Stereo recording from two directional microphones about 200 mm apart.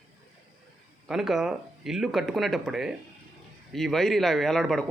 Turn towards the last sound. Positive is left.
turn(degrees=0)  # may be behind; listen again after turning